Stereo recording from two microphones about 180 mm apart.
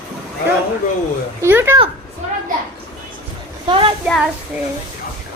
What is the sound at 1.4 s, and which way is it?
Speech, 10° right (ahead or behind).